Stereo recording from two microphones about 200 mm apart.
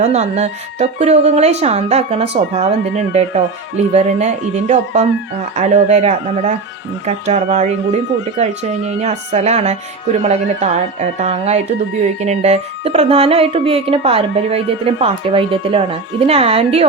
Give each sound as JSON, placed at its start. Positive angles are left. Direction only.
{"t": 0.0, "sound": "a woman's voice", "side_deg": -35}
{"t": 9.0, "sound": "a woman's voice", "side_deg": -35}